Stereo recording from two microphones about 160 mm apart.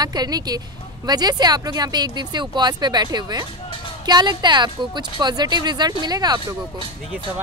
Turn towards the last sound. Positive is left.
turn(degrees=-25)  # may be behind; listen again after turning